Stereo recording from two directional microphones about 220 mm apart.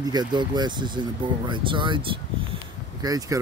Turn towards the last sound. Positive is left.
turn(degrees=-15)  # may be behind; listen again after turning